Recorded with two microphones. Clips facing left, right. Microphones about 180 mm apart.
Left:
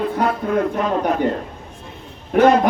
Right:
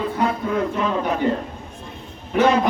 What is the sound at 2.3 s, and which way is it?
Speech, 50° left (ahead or behind).